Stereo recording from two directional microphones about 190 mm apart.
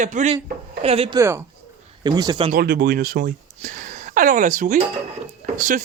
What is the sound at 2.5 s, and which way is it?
Speech, 50° right (ahead or behind).